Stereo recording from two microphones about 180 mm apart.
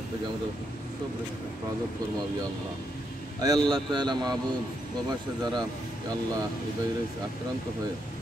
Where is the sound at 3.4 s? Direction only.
20° right (ahead or behind).